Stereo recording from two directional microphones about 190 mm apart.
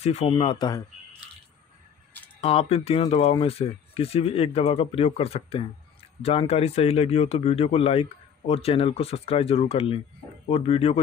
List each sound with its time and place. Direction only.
0.0 s speech: 35° left (ahead or behind)
2.4 s speech: 30° left (ahead or behind)